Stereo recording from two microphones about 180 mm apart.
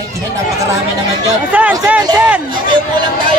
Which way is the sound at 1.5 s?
10° right (ahead or behind).